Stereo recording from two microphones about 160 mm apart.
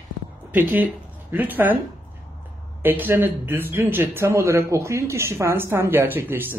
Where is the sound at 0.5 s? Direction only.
10° right (ahead or behind).